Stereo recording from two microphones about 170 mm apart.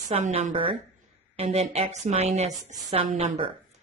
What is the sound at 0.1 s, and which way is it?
A woman's voice, 40° right (ahead or behind).